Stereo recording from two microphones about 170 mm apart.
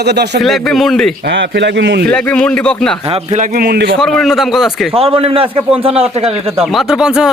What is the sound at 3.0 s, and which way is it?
Speech, 40° right (ahead or behind).